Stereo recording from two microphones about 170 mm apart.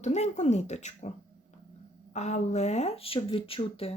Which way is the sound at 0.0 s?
40° left (ahead or behind).